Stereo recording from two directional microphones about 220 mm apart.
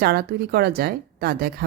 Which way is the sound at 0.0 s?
45° right (ahead or behind).